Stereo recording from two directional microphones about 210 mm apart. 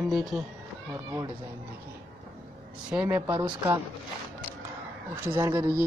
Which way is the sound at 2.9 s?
10° right (ahead or behind).